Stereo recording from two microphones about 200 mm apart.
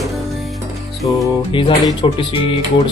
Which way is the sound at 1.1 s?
20° left (ahead or behind).